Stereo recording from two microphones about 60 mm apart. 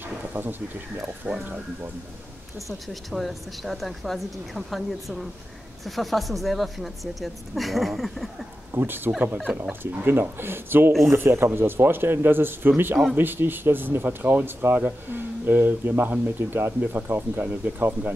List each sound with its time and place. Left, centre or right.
0.3 s speech: right
1.3 s speech: right
2.9 s a woman's voice: centre
8.7 s speech: right
16.9 s speech: right